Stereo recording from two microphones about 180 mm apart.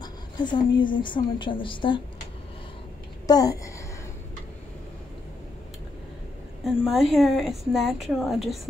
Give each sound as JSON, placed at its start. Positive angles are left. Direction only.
{"t": 0.0, "sound": "a sound", "side_deg": 25}
{"t": 0.9, "sound": "a woman's voice", "side_deg": 25}
{"t": 3.3, "sound": "a woman's voice", "side_deg": 20}
{"t": 6.6, "sound": "a woman's voice", "side_deg": 0}